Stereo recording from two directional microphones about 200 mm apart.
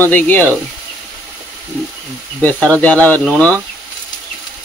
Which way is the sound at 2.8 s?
10° left (ahead or behind).